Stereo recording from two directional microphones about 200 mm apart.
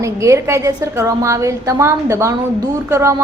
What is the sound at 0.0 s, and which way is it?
A woman's voice, 15° right (ahead or behind).